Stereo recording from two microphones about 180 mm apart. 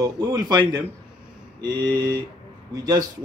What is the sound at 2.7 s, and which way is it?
Speech, 20° right (ahead or behind).